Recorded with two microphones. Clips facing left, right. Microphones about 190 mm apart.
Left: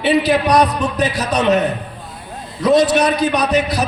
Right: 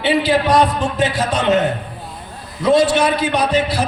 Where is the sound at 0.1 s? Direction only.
25° right (ahead or behind).